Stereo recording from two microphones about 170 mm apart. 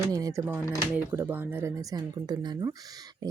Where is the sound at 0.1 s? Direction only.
20° right (ahead or behind).